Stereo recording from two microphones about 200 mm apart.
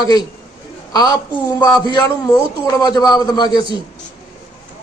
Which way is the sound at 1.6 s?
20° left (ahead or behind).